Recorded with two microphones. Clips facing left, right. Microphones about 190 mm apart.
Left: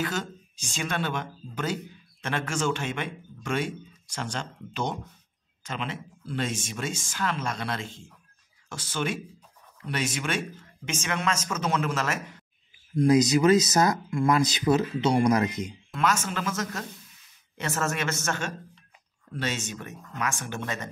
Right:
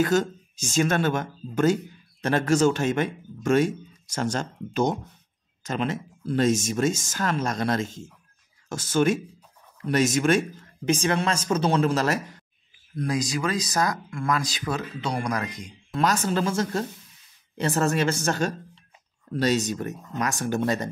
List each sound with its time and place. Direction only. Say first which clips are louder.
0.0 s a man's voice: right 9 dB; 40° right (ahead or behind)
13.0 s speech: left 7 dB; 20° left (ahead or behind)
16.0 s a man's voice: right 4 dB; 35° right (ahead or behind)